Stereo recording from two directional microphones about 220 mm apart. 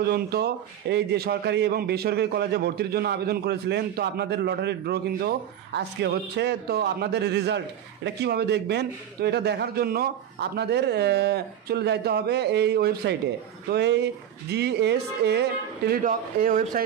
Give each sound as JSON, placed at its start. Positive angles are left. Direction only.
{"t": 0.0, "sound": "a man's voice", "side_deg": -45}